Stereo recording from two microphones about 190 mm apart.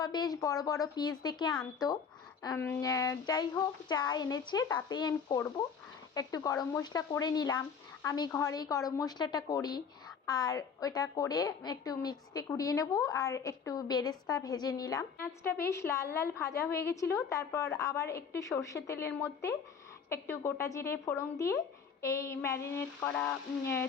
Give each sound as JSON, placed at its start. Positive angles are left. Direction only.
{"t": 0.0, "sound": "a woman's voice", "side_deg": 20}